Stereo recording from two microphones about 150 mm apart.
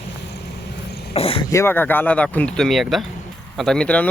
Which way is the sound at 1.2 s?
40° left (ahead or behind).